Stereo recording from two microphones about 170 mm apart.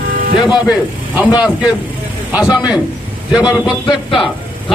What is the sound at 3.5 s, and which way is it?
Speech, 30° left (ahead or behind).